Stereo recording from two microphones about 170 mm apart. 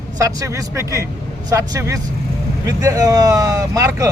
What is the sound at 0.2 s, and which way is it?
Speech, 20° right (ahead or behind).